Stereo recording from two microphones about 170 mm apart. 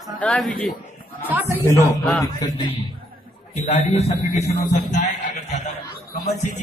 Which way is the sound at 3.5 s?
45° left (ahead or behind).